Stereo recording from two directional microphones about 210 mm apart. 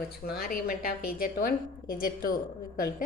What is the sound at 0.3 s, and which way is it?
A woman's voice, 45° left (ahead or behind).